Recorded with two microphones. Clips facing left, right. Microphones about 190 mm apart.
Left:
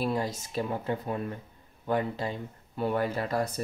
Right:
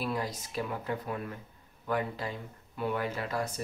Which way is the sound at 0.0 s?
25° left (ahead or behind).